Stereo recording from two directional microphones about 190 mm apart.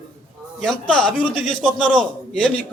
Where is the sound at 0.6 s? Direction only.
5° left (ahead or behind).